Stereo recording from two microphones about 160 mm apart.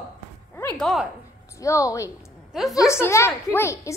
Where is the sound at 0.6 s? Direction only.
5° left (ahead or behind).